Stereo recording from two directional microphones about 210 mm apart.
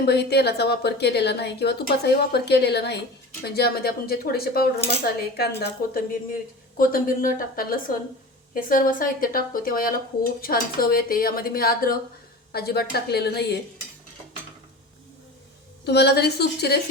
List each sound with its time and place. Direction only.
0.0 s a woman's voice: 50° left (ahead or behind)
15.8 s a woman's voice: 50° left (ahead or behind)